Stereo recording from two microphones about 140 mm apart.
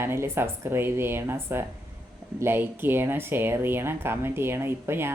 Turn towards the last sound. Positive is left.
turn(degrees=-15)  # may be behind; listen again after turning